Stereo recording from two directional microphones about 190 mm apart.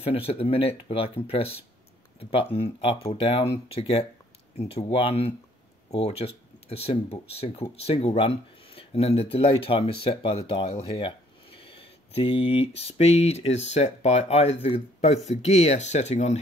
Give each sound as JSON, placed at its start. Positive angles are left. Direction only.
{"t": 0.0, "sound": "speech", "side_deg": 30}